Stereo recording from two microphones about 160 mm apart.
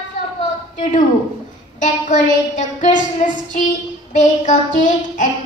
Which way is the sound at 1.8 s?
50° left (ahead or behind).